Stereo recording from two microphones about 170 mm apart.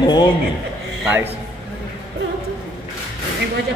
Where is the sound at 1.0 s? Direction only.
10° right (ahead or behind).